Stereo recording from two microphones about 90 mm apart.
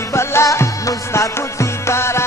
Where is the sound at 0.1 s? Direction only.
30° left (ahead or behind).